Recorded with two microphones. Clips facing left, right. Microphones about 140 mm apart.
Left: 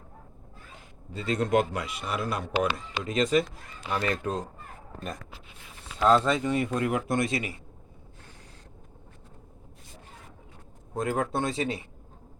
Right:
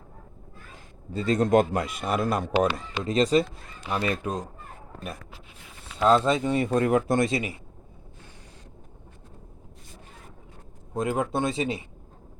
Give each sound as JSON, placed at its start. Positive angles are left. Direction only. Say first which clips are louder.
{"t": 1.1, "sound": "a man's voice", "louder": "right 4 dB", "side_deg": -40}
{"t": 3.0, "sound": "speech", "louder": "right 3 dB", "side_deg": -35}
{"t": 3.8, "sound": "speech", "louder": "right 1 dB", "side_deg": -20}
{"t": 6.1, "sound": "speech", "louder": "right 2 dB", "side_deg": -20}
{"t": 10.9, "sound": "speech", "louder": "right 2 dB", "side_deg": -20}